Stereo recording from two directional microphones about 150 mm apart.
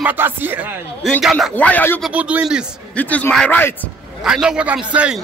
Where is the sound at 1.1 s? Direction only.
Centre (ahead or behind).